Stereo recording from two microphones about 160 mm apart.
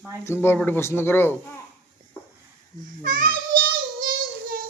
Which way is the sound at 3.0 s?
65° right (ahead or behind).